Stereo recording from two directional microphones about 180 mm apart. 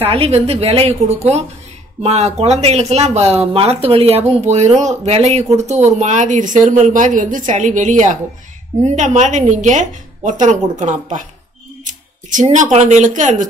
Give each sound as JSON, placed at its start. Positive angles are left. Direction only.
{"t": 0.0, "sound": "a woman's voice", "side_deg": -35}